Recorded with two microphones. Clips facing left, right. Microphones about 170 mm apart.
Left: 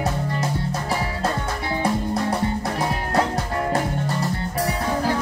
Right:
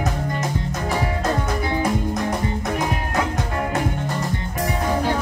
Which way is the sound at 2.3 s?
35° left (ahead or behind).